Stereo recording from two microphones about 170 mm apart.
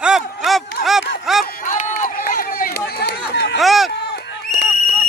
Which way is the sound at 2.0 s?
55° left (ahead or behind).